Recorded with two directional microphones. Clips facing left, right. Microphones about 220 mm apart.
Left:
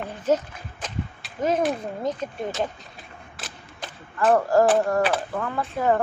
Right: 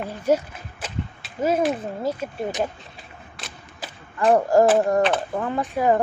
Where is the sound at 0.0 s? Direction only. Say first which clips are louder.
Right 2 dB; 10° right (ahead or behind).